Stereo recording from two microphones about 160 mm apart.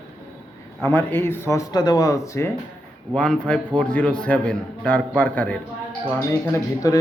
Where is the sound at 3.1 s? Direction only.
5° left (ahead or behind).